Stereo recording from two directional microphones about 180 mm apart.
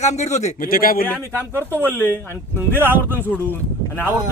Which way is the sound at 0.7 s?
55° left (ahead or behind).